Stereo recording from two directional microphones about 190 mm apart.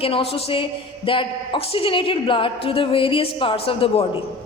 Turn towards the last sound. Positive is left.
turn(degrees=30)  # may be behind; listen again after turning